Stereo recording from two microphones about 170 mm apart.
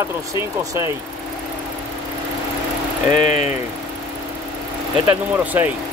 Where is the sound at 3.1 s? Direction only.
45° left (ahead or behind).